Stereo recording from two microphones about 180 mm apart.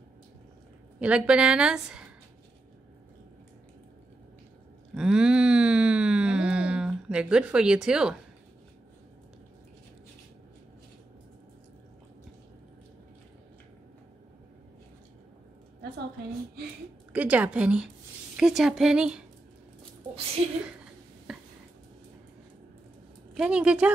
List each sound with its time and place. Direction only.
0.9 s a woman's voice: 5° right (ahead or behind)
4.9 s a sound: 5° right (ahead or behind)
17.1 s a woman's voice: 10° right (ahead or behind)
20.4 s a woman's voice: 35° right (ahead or behind)
21.3 s a sound: centre (ahead or behind)
23.3 s a woman's voice: 5° right (ahead or behind)